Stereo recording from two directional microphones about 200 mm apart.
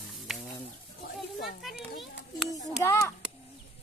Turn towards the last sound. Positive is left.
turn(degrees=15)  # may be behind; listen again after turning